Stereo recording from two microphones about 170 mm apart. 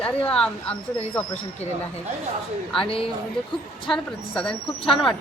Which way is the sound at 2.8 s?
30° left (ahead or behind).